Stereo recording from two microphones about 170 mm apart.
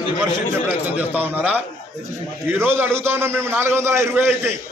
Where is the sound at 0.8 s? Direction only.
10° right (ahead or behind).